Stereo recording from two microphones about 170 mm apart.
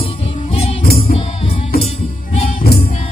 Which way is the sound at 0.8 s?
65° left (ahead or behind).